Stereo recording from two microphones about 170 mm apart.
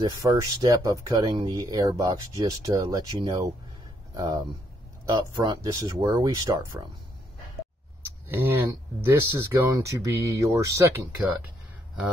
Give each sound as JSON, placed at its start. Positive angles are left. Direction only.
{"t": 0.0, "sound": "speech", "side_deg": -25}
{"t": 8.3, "sound": "speech", "side_deg": -10}